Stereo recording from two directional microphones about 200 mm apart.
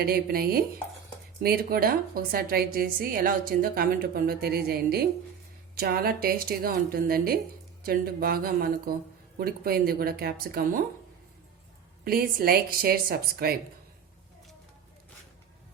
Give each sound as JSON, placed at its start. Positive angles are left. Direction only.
{"t": 0.0, "sound": "a woman's voice", "side_deg": -50}
{"t": 12.0, "sound": "a woman's voice", "side_deg": -50}